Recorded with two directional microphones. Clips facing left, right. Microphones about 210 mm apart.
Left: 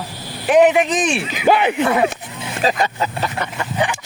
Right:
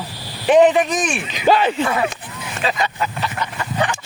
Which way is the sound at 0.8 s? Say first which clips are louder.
Left 2 dB; 20° left (ahead or behind).